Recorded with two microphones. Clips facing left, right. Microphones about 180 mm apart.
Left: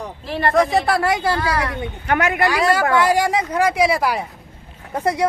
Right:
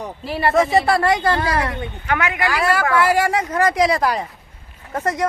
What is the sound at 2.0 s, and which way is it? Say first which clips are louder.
Speech: left 3 dB; 45° left (ahead or behind).